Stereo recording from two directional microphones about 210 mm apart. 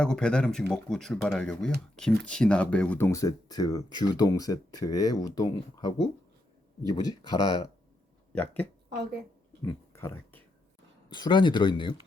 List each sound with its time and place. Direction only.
0.0 s speech: 5° left (ahead or behind)
8.3 s speech: 5° left (ahead or behind)
11.1 s speech: 20° left (ahead or behind)